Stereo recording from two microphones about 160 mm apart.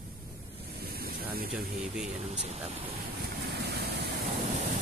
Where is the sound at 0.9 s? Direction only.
70° right (ahead or behind).